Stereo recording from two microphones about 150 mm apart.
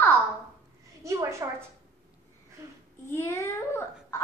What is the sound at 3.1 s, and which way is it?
A child's voice, 15° left (ahead or behind).